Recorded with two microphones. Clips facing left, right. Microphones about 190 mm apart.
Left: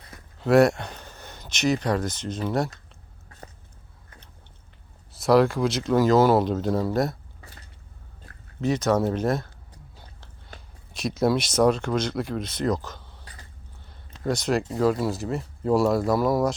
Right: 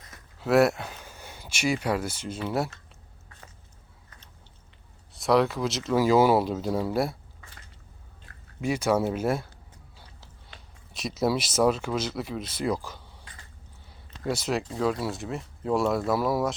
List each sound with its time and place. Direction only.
0.3 s speech: 5° right (ahead or behind)
5.1 s speech: centre (ahead or behind)
8.3 s a sound: 35° left (ahead or behind)
8.6 s speech: 10° right (ahead or behind)
10.5 s a sound: 45° left (ahead or behind)
10.9 s speech: centre (ahead or behind)
14.3 s speech: 5° right (ahead or behind)